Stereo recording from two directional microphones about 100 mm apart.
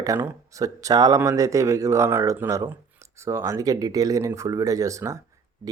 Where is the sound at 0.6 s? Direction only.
35° right (ahead or behind).